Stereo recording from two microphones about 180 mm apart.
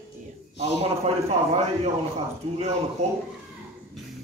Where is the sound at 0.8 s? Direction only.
35° right (ahead or behind).